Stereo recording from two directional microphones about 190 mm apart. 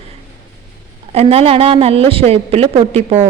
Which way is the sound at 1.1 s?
30° right (ahead or behind).